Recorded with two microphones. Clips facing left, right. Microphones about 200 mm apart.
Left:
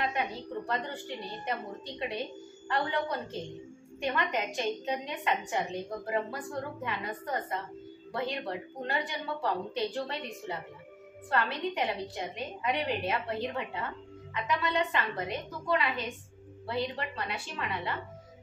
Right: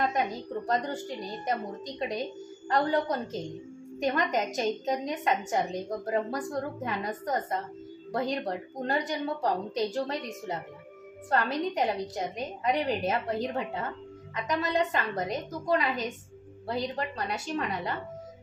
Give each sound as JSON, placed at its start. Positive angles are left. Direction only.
{"t": 0.7, "sound": "a woman's voice", "side_deg": -45}